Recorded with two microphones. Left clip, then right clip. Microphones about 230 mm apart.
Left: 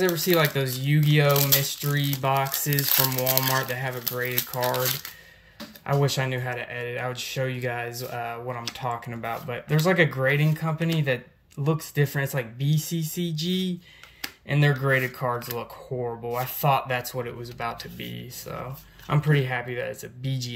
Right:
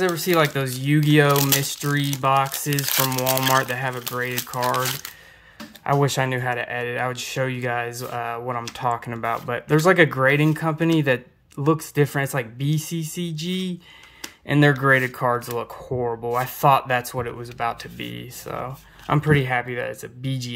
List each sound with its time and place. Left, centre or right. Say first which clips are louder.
0.0 s speech: right 2 dB; centre